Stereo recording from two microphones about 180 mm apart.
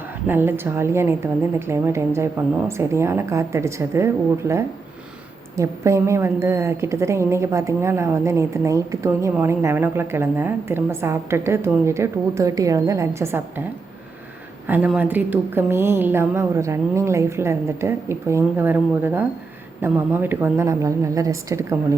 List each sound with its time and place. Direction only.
0.3 s a woman's voice: 10° right (ahead or behind)
14.7 s a woman's voice: 10° right (ahead or behind)